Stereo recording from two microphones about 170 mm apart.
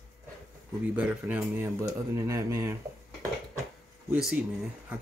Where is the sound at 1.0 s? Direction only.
10° right (ahead or behind).